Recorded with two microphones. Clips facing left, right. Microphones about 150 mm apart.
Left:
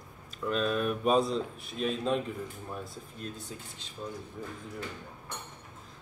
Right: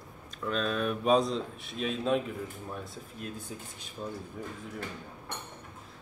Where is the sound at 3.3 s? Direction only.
10° right (ahead or behind).